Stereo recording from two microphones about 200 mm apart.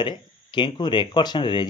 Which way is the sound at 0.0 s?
20° left (ahead or behind).